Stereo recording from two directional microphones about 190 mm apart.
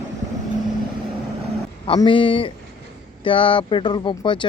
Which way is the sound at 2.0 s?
25° left (ahead or behind).